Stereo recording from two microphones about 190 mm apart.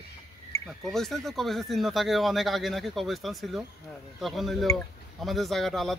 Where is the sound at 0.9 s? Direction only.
Centre (ahead or behind).